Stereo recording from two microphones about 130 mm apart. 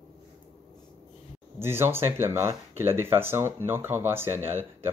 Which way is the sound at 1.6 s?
20° right (ahead or behind).